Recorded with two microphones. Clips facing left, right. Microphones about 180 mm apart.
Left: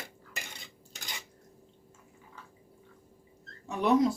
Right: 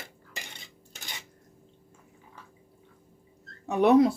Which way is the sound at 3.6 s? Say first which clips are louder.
Right 5 dB; 65° right (ahead or behind).